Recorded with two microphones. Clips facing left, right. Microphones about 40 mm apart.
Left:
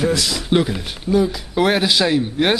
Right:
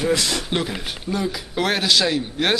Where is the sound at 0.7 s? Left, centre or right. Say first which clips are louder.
Left 6 dB; centre.